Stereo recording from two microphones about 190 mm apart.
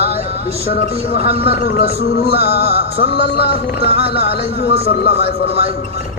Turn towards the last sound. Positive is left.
turn(degrees=60)  # may be behind; listen again after turning